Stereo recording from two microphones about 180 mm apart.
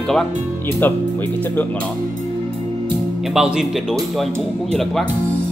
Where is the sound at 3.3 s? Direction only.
5° right (ahead or behind).